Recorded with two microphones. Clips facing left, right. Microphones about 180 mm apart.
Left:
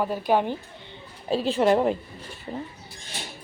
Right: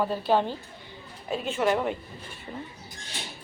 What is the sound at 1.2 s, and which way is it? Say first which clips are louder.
Speech: left 5 dB; 35° left (ahead or behind).